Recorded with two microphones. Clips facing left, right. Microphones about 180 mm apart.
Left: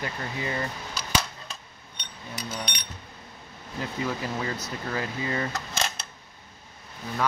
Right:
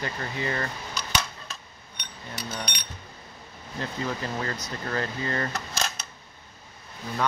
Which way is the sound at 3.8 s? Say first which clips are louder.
Left 1 dB; 10° left (ahead or behind).